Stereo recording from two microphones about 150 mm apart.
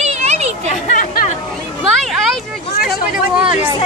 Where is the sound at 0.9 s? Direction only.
65° left (ahead or behind).